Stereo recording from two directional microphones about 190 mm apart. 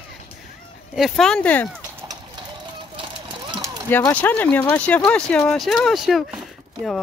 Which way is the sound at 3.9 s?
10° left (ahead or behind).